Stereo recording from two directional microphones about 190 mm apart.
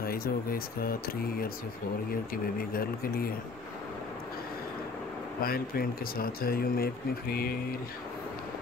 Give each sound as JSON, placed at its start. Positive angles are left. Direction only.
{"t": 0.0, "sound": "speech", "side_deg": 50}
{"t": 5.4, "sound": "speech", "side_deg": 50}